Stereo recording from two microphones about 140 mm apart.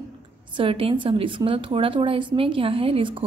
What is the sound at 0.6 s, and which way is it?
Speech, 40° right (ahead or behind).